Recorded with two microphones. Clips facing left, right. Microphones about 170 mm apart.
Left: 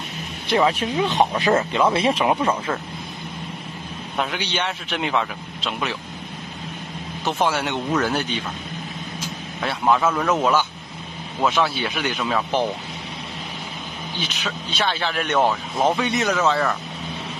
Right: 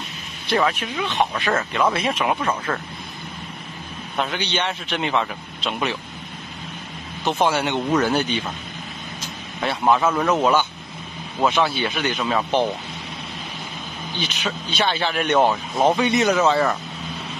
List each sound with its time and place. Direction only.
0.5 s speech: 20° left (ahead or behind)
0.7 s speech: 35° left (ahead or behind)
1.3 s speech: 15° left (ahead or behind)
2.0 s speech: 30° left (ahead or behind)
2.4 s speech: 10° left (ahead or behind)
4.2 s a man's voice: 5° left (ahead or behind)
7.2 s a man's voice: centre (ahead or behind)
9.6 s speech: 5° right (ahead or behind)
11.4 s a man's voice: centre (ahead or behind)
14.2 s a man's voice: centre (ahead or behind)